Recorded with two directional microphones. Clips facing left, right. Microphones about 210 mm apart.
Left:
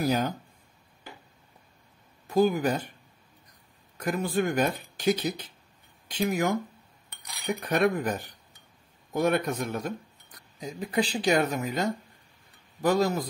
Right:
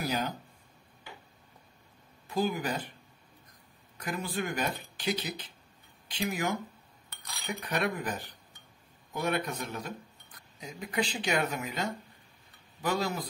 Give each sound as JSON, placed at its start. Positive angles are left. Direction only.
{"t": 0.0, "sound": "speech", "side_deg": 45}
{"t": 2.2, "sound": "speech", "side_deg": 45}
{"t": 4.0, "sound": "speech", "side_deg": 45}
{"t": 7.6, "sound": "speech", "side_deg": 50}
{"t": 10.6, "sound": "speech", "side_deg": 35}